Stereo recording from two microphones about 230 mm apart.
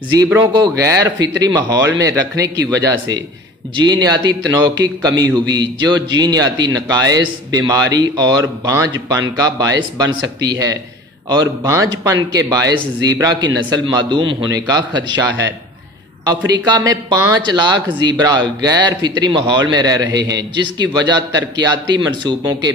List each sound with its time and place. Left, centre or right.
0.2 s a man's voice: centre